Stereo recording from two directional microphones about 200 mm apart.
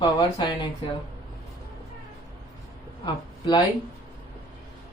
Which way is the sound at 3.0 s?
20° left (ahead or behind).